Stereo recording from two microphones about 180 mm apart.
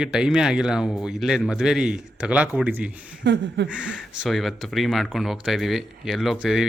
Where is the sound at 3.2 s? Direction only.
75° right (ahead or behind).